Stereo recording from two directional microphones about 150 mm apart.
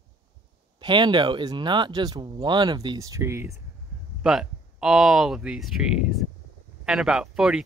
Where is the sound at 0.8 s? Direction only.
30° right (ahead or behind).